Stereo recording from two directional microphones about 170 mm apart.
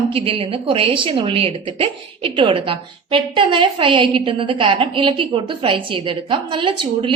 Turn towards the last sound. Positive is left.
turn(degrees=-30)  # may be behind; listen again after turning